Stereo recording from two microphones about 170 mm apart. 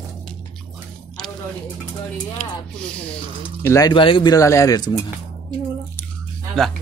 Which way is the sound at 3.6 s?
20° left (ahead or behind).